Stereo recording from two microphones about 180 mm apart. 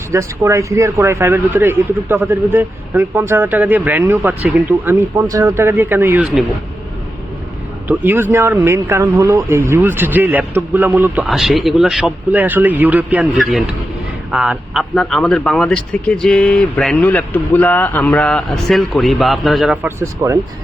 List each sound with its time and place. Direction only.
0.1 s speech: 15° right (ahead or behind)
7.9 s speech: 10° right (ahead or behind)
20.0 s speech: 15° right (ahead or behind)